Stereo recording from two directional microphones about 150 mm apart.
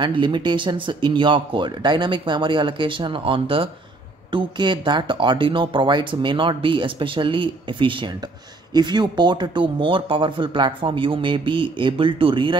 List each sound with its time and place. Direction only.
0.0 s speech: 30° right (ahead or behind)